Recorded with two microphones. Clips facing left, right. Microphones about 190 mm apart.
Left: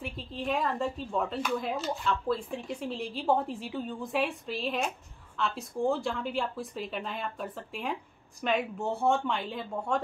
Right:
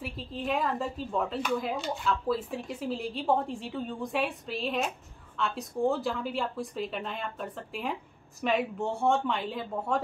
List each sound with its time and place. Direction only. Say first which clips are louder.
0.0 s speech: even; centre (ahead or behind)